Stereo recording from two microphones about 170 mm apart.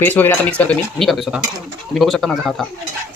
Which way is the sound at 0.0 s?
10° left (ahead or behind).